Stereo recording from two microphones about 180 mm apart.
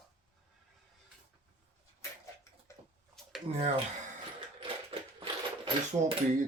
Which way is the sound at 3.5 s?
30° right (ahead or behind).